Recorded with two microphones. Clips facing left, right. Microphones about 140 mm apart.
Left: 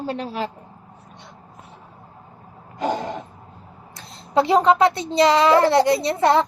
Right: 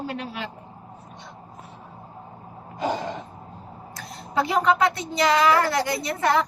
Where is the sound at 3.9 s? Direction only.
25° left (ahead or behind).